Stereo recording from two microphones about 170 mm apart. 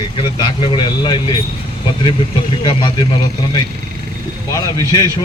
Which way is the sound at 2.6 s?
25° left (ahead or behind).